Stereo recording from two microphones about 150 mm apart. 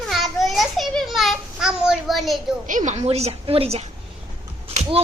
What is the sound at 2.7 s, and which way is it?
A woman's voice, 55° right (ahead or behind).